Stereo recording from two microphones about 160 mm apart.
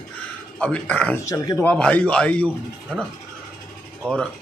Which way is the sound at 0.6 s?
5° left (ahead or behind).